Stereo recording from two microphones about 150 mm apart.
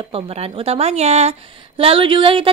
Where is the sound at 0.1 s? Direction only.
40° right (ahead or behind).